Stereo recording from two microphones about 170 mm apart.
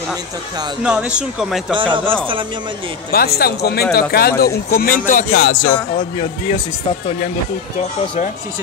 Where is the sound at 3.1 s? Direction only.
65° left (ahead or behind); by 6.2 s 50° left (ahead or behind).